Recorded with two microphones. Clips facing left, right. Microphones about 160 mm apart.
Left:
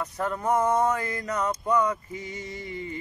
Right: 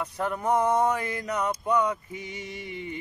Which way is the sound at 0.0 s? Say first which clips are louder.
Even; 15° right (ahead or behind).